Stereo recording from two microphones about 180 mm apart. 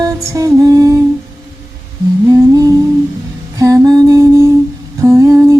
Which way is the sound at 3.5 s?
20° right (ahead or behind).